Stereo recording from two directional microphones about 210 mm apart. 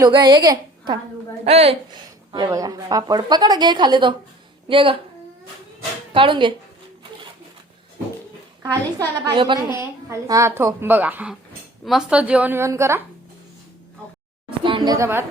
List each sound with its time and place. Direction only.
0.0 s a woman's voice: 20° right (ahead or behind)
2.3 s speech: 15° right (ahead or behind)
6.1 s speech: 25° right (ahead or behind)
8.6 s speech: 20° right (ahead or behind)
14.6 s a sound: 20° right (ahead or behind)